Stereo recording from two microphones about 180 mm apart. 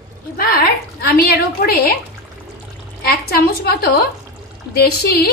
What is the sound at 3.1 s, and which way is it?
A woman's voice, 60° left (ahead or behind).